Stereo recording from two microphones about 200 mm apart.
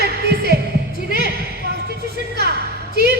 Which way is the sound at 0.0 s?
55° right (ahead or behind).